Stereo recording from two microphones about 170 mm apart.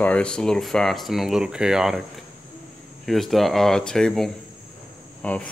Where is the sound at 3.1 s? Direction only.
Centre (ahead or behind).